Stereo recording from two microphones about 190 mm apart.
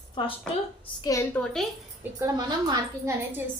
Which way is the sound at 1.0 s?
15° left (ahead or behind).